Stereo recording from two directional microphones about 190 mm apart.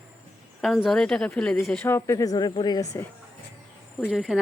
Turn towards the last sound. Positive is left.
turn(degrees=0)  # may be behind; listen again after turning